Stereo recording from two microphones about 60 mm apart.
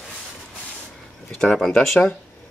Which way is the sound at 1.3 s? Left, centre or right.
Centre.